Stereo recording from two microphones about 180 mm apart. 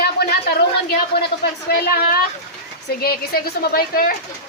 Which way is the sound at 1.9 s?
60° left (ahead or behind).